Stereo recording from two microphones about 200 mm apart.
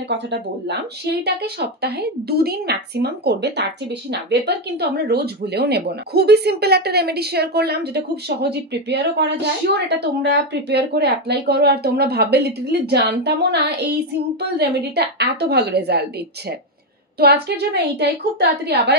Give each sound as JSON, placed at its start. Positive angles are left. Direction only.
{"t": 0.1, "sound": "a woman's voice", "side_deg": -60}